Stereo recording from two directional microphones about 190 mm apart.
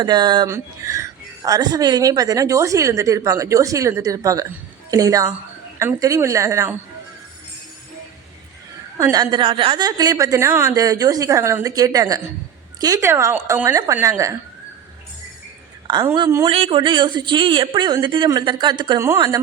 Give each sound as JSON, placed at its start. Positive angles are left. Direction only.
{"t": 0.0, "sound": "speech", "side_deg": -25}
{"t": 9.0, "sound": "a woman's voice", "side_deg": -20}
{"t": 16.1, "sound": "a woman's voice", "side_deg": -20}